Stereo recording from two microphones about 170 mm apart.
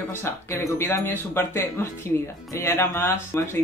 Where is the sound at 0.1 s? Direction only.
15° left (ahead or behind).